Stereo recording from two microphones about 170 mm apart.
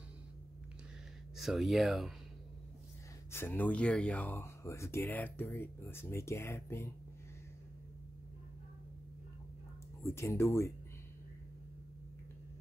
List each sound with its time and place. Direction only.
1.3 s speech: centre (ahead or behind)
3.3 s speech: 15° left (ahead or behind)
10.0 s speech: 15° left (ahead or behind)